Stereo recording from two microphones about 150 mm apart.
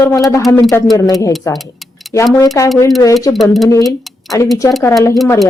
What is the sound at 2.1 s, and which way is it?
Speech, 20° left (ahead or behind).